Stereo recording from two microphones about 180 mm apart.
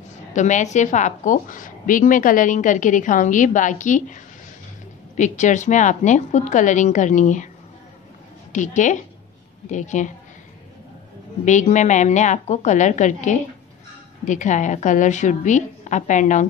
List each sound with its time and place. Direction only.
0.3 s a woman's voice: 40° left (ahead or behind)
8.5 s a woman's voice: 45° left (ahead or behind)
11.4 s a woman's voice: 45° left (ahead or behind)